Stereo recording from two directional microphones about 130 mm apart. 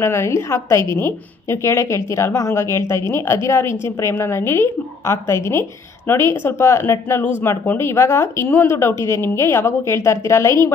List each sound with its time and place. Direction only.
0.0 s a woman's voice: 20° left (ahead or behind)